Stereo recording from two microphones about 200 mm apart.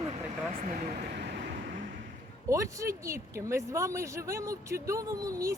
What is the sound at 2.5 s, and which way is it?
Speech, 15° right (ahead or behind).